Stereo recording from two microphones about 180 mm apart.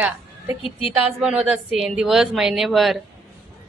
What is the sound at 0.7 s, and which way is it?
Speech, 30° left (ahead or behind).